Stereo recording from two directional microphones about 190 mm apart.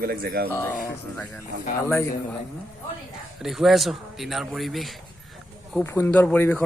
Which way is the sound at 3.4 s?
Centre (ahead or behind).